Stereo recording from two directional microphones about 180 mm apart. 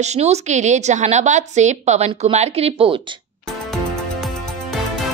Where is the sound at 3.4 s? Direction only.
Centre (ahead or behind).